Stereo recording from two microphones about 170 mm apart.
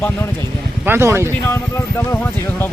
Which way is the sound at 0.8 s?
15° right (ahead or behind).